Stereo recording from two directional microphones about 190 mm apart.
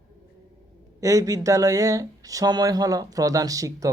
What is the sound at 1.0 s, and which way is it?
Speech, 15° right (ahead or behind).